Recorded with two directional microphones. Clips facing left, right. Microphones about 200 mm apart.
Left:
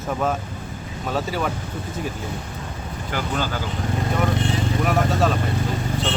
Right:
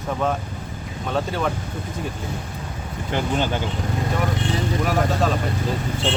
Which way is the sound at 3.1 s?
20° right (ahead or behind).